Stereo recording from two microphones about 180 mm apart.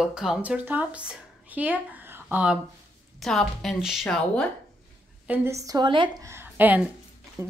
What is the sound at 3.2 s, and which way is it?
A woman's voice, centre (ahead or behind).